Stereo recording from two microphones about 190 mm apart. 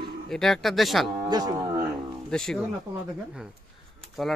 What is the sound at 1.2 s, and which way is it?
Speech, 20° right (ahead or behind).